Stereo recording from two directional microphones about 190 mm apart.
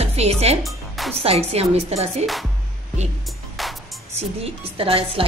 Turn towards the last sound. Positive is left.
turn(degrees=-30)  # may be behind; listen again after turning